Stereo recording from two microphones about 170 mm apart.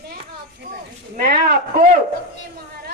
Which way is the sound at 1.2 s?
55° right (ahead or behind).